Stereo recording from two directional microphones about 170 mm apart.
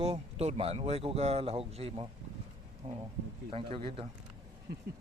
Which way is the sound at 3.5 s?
30° right (ahead or behind).